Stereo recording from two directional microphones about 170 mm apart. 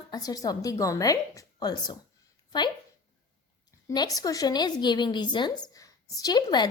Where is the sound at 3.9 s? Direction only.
25° left (ahead or behind).